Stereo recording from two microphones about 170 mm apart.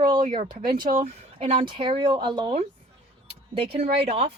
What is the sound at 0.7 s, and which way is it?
Speech, 60° right (ahead or behind).